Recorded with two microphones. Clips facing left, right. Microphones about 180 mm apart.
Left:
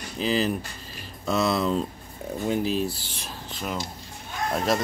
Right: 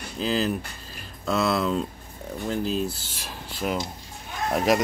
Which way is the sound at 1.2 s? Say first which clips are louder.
Even; centre (ahead or behind).